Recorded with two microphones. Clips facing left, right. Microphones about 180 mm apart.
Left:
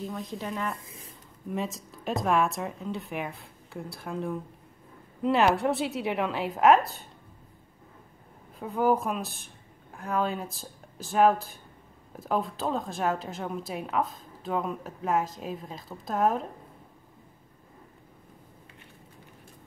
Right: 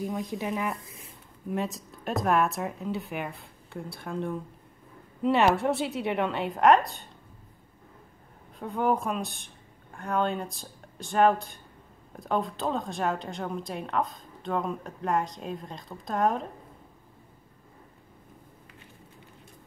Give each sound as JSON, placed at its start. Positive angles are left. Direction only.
{"t": 0.0, "sound": "speech", "side_deg": -15}
{"t": 0.8, "sound": "speech", "side_deg": 30}
{"t": 1.5, "sound": "speech", "side_deg": 0}
{"t": 8.5, "sound": "speech", "side_deg": 0}